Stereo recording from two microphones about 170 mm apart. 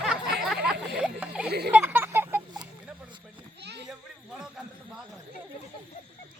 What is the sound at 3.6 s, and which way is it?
Children playing, 80° right.